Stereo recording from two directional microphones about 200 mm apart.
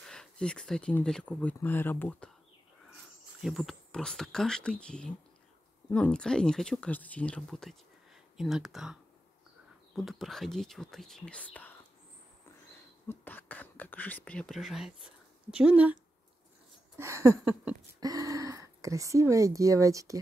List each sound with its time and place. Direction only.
0.0 s speech: 5° left (ahead or behind)
3.4 s speech: centre (ahead or behind)
9.9 s speech: centre (ahead or behind)
13.1 s speech: 10° left (ahead or behind)
15.5 s a sound: 5° right (ahead or behind)
17.0 s a sound: 15° right (ahead or behind)
18.0 s speech: 15° right (ahead or behind)